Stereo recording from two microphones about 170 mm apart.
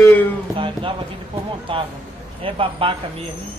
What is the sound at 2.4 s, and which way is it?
Speech, 30° right (ahead or behind).